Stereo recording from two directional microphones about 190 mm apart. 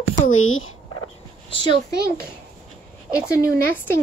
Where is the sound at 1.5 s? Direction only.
25° left (ahead or behind).